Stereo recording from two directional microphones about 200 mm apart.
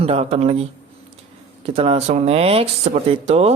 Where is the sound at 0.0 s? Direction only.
30° right (ahead or behind).